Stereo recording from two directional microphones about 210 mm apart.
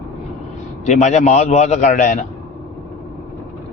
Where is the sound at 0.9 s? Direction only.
35° left (ahead or behind).